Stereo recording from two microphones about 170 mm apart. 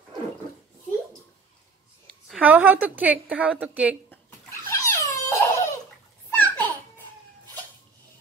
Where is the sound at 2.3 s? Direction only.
10° right (ahead or behind).